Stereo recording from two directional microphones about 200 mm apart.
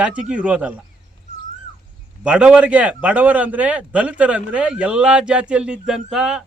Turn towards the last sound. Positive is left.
turn(degrees=-5)  # may be behind; listen again after turning